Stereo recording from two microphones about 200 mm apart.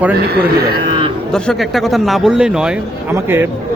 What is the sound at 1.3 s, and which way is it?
A man's voice, 5° left (ahead or behind).